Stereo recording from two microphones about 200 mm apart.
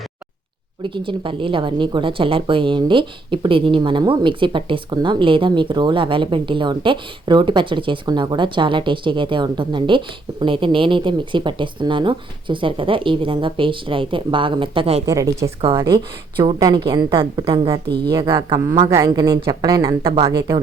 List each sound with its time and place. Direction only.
0.8 s a woman's voice: 25° right (ahead or behind)
15.0 s a woman's voice: 15° right (ahead or behind)
17.8 s speech: 55° right (ahead or behind)
18.3 s a woman's voice: 25° right (ahead or behind)